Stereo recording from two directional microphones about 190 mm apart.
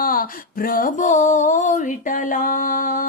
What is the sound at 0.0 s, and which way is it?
Mantra, 50° left (ahead or behind).